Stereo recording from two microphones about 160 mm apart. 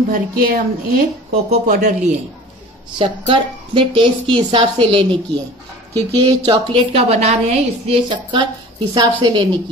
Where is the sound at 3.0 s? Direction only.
30° right (ahead or behind).